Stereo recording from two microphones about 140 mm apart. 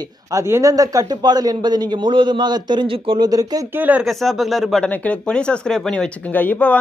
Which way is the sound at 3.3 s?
25° right (ahead or behind).